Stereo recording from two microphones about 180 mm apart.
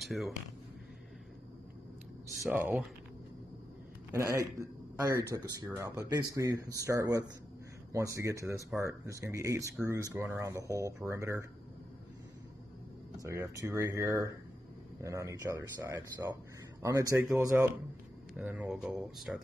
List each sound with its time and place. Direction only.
0.0 s speech: centre (ahead or behind)
2.4 s speech: 10° right (ahead or behind)
4.1 s speech: 15° right (ahead or behind)
13.2 s speech: 20° right (ahead or behind); by 19.4 s 5° right (ahead or behind)